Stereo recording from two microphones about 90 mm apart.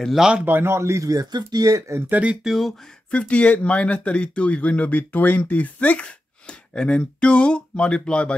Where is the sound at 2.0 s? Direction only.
15° right (ahead or behind).